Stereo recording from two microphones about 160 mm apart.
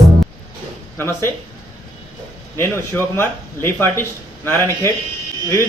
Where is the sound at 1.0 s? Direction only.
15° left (ahead or behind).